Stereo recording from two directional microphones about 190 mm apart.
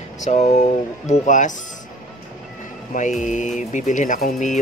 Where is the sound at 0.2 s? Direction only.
35° left (ahead or behind).